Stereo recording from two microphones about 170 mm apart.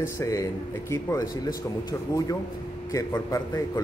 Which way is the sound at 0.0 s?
20° left (ahead or behind).